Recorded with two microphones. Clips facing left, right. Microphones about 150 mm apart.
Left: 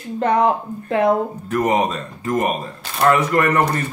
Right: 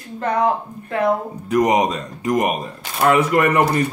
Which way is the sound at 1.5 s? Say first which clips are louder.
Right 2 dB; 15° right (ahead or behind).